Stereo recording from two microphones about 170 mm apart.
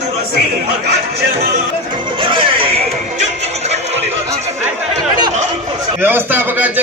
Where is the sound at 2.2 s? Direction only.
30° right (ahead or behind).